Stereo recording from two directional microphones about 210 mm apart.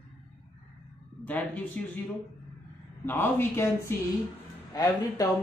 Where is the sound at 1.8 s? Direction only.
5° left (ahead or behind).